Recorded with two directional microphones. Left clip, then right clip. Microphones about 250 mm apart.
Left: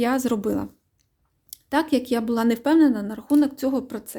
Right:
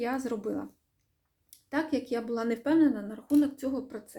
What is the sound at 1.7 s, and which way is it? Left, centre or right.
A woman's voice, left.